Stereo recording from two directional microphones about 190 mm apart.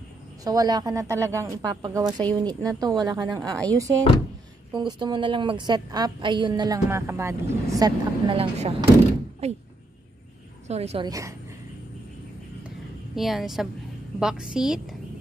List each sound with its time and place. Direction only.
0.4 s a woman's voice: 20° right (ahead or behind); by 9.6 s 35° right (ahead or behind)
10.7 s a woman's voice: 35° right (ahead or behind)
11.1 s speech: 15° right (ahead or behind)
13.1 s a woman's voice: centre (ahead or behind)